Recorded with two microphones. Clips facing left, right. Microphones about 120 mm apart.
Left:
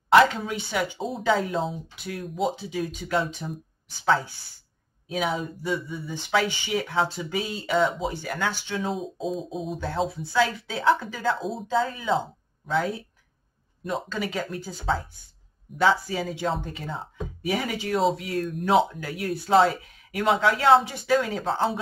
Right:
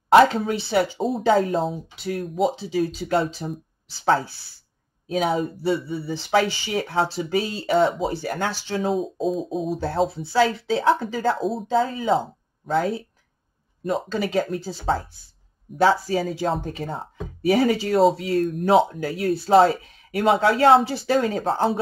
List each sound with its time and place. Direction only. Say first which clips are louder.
0.1 s speech: right 3 dB; 35° right (ahead or behind)
2.6 s speech: right 6 dB; 35° right (ahead or behind)
8.9 s speech: right 6 dB; centre (ahead or behind)
9.8 s speech: right 3 dB; 35° right (ahead or behind)
11.0 s speech: right 4 dB; 45° right (ahead or behind)
13.8 s speech: right 5 dB; 35° right (ahead or behind)
15.8 s speech: right 4 dB; 40° right (ahead or behind)
17.5 s speech: right 8 dB; 35° right (ahead or behind)